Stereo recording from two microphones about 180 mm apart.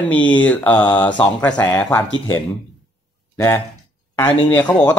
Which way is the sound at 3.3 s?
15° left (ahead or behind).